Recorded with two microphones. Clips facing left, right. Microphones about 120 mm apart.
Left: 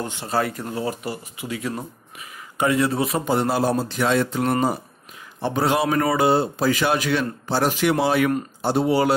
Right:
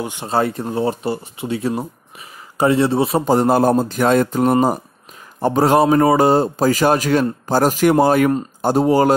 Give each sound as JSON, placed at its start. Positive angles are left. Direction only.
{"t": 0.0, "sound": "speech", "side_deg": -15}
{"t": 0.3, "sound": "speech", "side_deg": -25}